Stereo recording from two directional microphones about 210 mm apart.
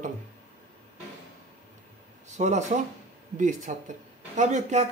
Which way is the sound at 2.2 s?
35° right (ahead or behind).